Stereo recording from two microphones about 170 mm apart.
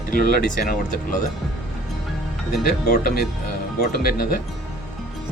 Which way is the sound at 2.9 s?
60° left (ahead or behind).